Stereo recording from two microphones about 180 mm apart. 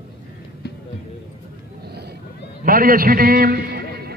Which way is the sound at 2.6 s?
55° right (ahead or behind).